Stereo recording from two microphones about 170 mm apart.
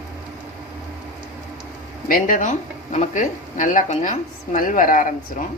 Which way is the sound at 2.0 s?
55° left (ahead or behind).